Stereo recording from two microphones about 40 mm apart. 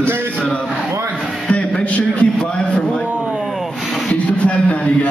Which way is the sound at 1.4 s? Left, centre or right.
Left.